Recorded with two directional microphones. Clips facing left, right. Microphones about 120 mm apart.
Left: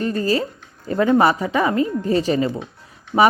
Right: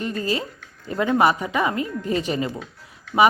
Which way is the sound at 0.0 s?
40° left (ahead or behind).